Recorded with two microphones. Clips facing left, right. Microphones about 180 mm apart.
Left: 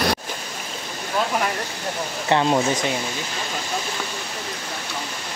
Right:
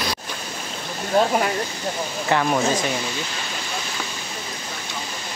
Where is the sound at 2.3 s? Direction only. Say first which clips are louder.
Left 1 dB; 20° left (ahead or behind).